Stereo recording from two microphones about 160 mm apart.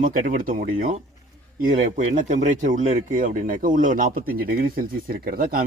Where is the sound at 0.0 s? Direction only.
60° right (ahead or behind).